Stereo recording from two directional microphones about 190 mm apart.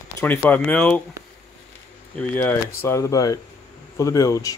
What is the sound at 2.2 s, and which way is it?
Speech, 10° left (ahead or behind).